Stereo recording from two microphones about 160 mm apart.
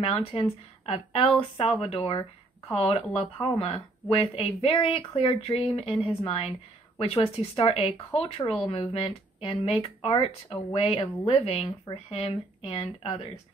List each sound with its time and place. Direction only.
0.0 s speech: 35° left (ahead or behind)